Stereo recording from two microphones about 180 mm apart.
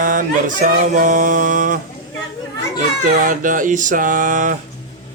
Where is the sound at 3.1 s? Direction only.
45° right (ahead or behind).